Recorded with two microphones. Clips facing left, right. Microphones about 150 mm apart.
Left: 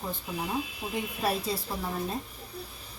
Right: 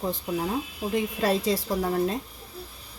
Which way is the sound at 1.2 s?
90° right.